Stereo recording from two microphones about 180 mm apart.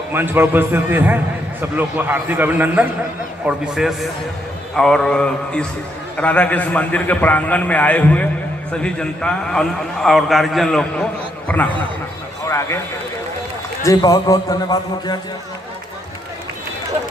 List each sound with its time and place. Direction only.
0.1 s a man's voice: 10° right (ahead or behind); by 12.8 s 15° left (ahead or behind)
13.8 s a man's voice: 20° left (ahead or behind)